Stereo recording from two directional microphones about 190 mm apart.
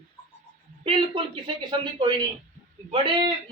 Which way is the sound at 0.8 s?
25° right (ahead or behind).